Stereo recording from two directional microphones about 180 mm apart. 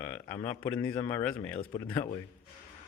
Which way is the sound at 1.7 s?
25° left (ahead or behind).